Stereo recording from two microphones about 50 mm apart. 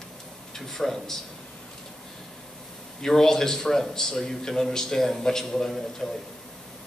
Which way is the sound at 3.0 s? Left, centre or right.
Centre.